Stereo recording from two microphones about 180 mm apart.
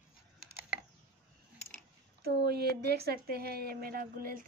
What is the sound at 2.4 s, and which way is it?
Speech, 65° right (ahead or behind).